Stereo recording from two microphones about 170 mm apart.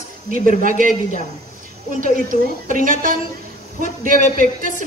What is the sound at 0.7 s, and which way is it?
Speech, 50° right (ahead or behind).